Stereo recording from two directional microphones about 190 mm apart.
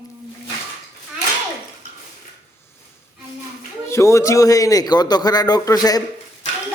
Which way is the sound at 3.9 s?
15° left (ahead or behind).